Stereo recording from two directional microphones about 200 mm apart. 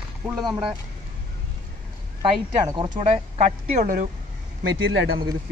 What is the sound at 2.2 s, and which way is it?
A woman's voice, 20° right (ahead or behind).